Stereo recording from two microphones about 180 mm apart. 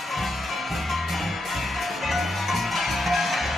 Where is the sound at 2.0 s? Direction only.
Centre (ahead or behind).